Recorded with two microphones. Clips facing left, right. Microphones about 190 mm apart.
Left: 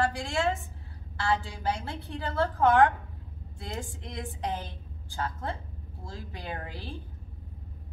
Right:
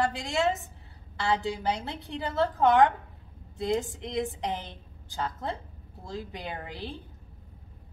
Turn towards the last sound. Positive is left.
turn(degrees=-20)  # may be behind; listen again after turning